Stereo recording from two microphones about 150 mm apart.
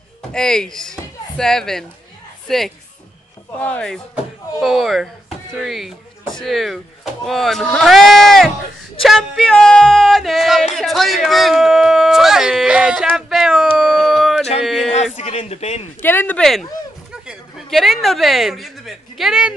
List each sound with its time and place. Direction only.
0.3 s speech: 5° left (ahead or behind)
13.1 s a sound: centre (ahead or behind)
14.6 s speech: centre (ahead or behind)
15.1 s a man's voice: 45° left (ahead or behind)
16.0 s a woman's voice: 15° left (ahead or behind); by 19.5 s 5° right (ahead or behind)